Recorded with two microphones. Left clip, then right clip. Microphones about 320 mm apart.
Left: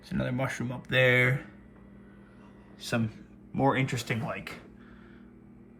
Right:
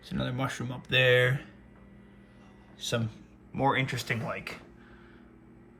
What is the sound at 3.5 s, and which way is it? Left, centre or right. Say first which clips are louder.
Speech: even; centre.